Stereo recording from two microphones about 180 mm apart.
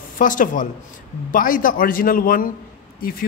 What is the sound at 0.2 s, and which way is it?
A woman's voice, 45° left (ahead or behind).